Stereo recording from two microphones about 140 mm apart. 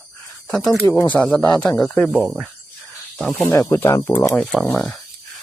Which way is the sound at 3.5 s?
15° left (ahead or behind).